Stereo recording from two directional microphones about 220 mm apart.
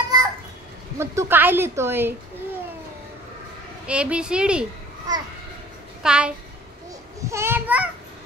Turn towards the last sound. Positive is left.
turn(degrees=-10)  # may be behind; listen again after turning